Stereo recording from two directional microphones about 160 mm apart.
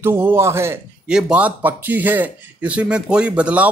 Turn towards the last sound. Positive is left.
turn(degrees=-10)  # may be behind; listen again after turning